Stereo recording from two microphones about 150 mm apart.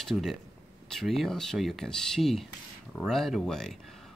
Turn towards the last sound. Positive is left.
turn(degrees=0)  # may be behind; listen again after turning